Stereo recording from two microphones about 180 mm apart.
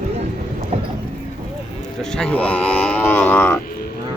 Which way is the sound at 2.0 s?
5° left (ahead or behind).